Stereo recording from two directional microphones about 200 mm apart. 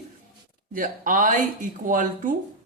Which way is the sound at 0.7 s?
40° right (ahead or behind).